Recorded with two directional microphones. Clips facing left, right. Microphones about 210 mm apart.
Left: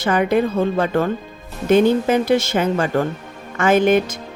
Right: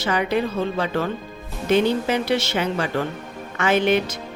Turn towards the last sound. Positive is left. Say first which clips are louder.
# left 4 dB
turn(degrees=50)  # may be behind; listen again after turning